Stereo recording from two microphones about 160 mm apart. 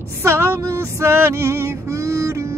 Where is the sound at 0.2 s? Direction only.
15° right (ahead or behind).